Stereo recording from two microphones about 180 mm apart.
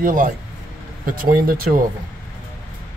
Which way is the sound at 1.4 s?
50° right (ahead or behind).